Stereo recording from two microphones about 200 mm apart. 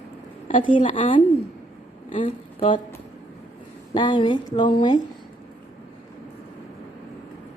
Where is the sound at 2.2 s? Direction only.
25° left (ahead or behind).